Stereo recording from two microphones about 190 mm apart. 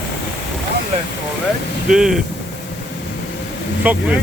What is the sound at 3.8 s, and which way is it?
Speech, 10° right (ahead or behind).